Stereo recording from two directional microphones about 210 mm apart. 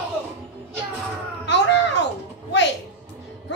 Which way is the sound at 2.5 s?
60° left (ahead or behind).